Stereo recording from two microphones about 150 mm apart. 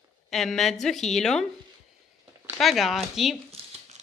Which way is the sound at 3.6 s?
40° right (ahead or behind).